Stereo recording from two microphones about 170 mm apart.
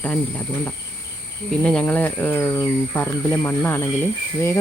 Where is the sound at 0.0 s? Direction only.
10° left (ahead or behind).